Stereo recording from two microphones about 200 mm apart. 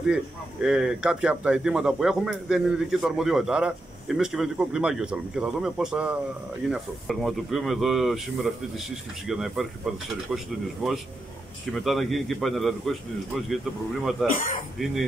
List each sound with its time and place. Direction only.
0.0 s speech: 5° right (ahead or behind)
14.3 s speech: 40° left (ahead or behind)
14.8 s speech: centre (ahead or behind)